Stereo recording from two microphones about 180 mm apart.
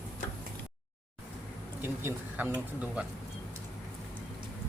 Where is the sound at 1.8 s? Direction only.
10° right (ahead or behind).